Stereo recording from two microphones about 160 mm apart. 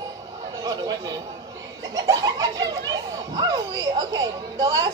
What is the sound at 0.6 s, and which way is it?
Speech, 25° right (ahead or behind).